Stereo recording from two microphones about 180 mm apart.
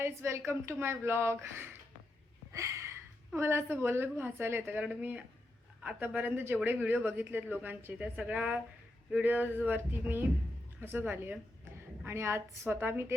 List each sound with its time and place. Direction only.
0.0 s speech: 15° right (ahead or behind)
2.5 s a sound: 15° right (ahead or behind)
3.3 s speech: 15° right (ahead or behind)